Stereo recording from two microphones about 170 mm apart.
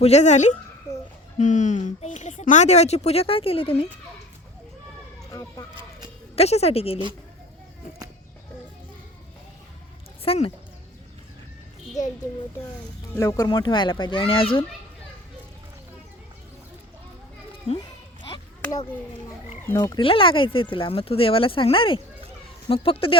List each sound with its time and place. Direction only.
0.0 s a woman's voice: 40° left (ahead or behind)
5.3 s speech: 20° left (ahead or behind)
6.3 s speech: 40° left (ahead or behind)
10.2 s speech: 35° left (ahead or behind)
13.1 s speech: 20° left (ahead or behind)
17.7 s a sound: 25° left (ahead or behind)
19.6 s frog: 15° left (ahead or behind)
20.0 s speech: 30° left (ahead or behind)